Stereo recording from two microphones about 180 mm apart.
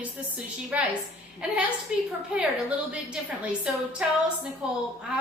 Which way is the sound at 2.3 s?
5° right (ahead or behind).